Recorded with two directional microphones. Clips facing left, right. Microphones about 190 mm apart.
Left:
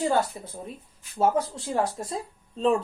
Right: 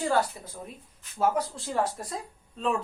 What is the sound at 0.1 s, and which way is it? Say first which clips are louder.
Speech: left 1 dB; 25° left (ahead or behind).